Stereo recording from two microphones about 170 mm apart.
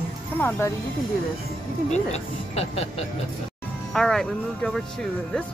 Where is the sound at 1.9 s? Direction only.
40° left (ahead or behind).